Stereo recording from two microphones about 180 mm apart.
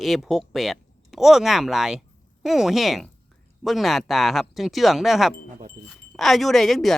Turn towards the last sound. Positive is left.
turn(degrees=0)  # may be behind; listen again after turning